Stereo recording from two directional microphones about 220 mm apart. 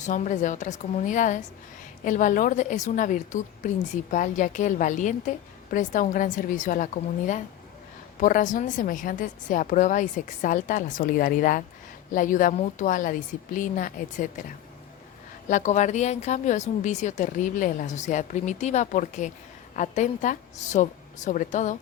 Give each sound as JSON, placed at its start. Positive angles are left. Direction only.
{"t": 0.0, "sound": "speech", "side_deg": 35}
{"t": 15.4, "sound": "speech", "side_deg": 35}